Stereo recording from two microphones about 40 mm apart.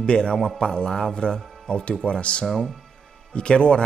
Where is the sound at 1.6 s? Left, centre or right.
Left.